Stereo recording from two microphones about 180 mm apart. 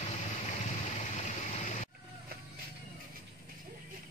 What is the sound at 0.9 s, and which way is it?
Vehicle, 40° left (ahead or behind).